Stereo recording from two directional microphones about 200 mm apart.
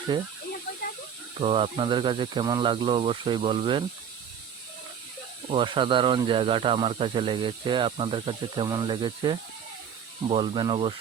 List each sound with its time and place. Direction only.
0.1 s speech: 25° right (ahead or behind)
1.4 s speech: 30° right (ahead or behind)
5.5 s speech: 25° right (ahead or behind)